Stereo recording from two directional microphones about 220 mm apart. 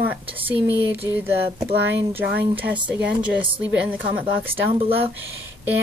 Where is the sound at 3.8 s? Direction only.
5° right (ahead or behind).